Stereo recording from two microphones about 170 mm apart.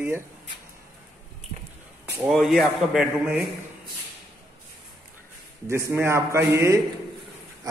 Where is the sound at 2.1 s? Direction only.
Centre (ahead or behind).